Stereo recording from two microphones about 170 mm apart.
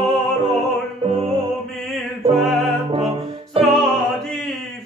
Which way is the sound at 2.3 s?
Centre (ahead or behind).